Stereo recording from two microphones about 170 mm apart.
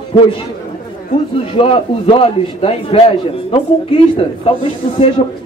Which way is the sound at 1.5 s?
30° left (ahead or behind).